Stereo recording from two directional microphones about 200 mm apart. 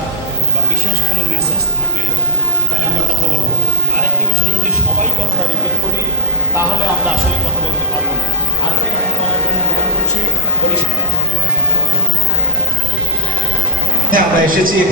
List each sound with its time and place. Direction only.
14.1 s a man's voice: 45° right (ahead or behind)